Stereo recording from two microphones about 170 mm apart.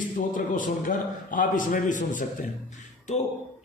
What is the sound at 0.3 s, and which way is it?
A man's voice, 50° left (ahead or behind).